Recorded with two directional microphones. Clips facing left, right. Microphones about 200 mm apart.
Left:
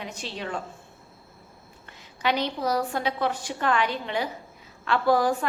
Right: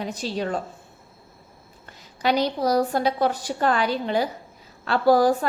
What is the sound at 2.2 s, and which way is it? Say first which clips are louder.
A woman's voice: right 4 dB; 40° right (ahead or behind).